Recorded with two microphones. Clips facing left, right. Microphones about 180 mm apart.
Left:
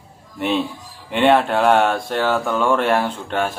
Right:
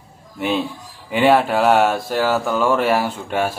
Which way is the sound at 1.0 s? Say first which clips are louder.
Even; 5° right (ahead or behind).